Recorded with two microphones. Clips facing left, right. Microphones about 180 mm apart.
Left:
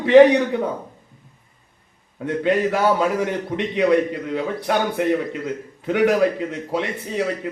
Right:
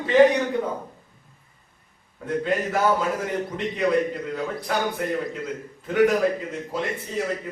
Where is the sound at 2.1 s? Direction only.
75° left (ahead or behind).